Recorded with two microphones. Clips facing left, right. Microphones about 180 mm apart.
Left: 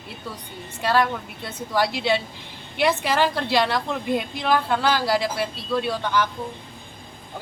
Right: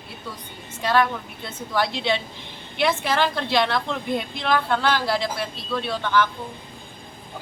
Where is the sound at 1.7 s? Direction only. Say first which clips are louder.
Left 2 dB; 10° left (ahead or behind).